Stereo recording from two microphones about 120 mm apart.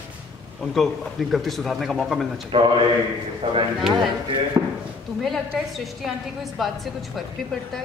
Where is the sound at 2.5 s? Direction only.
40° right (ahead or behind).